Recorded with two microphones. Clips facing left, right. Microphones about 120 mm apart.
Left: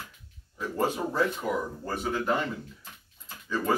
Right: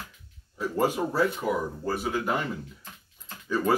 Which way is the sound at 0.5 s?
10° right (ahead or behind).